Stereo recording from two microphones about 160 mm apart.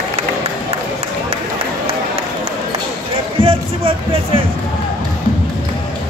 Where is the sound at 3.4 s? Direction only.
35° right (ahead or behind).